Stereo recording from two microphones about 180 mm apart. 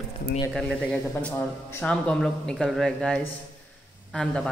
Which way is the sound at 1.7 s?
5° left (ahead or behind).